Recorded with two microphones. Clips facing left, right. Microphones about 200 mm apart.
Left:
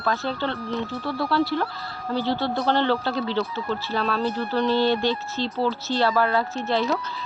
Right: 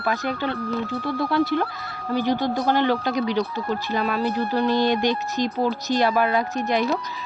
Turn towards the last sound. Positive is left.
turn(degrees=-15)  # may be behind; listen again after turning